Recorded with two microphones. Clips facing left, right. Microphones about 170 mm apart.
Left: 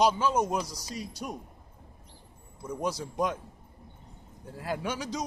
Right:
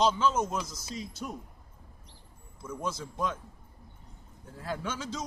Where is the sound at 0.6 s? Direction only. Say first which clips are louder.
Left 3 dB; 35° left (ahead or behind).